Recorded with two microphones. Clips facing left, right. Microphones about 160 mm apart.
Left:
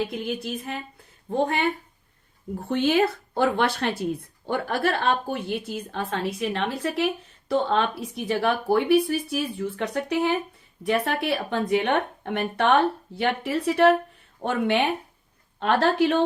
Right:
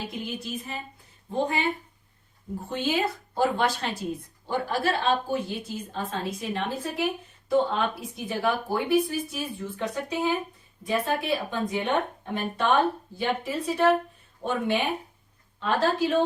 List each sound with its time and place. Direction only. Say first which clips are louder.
0.3 s a woman's voice: left 4 dB; 60° left (ahead or behind)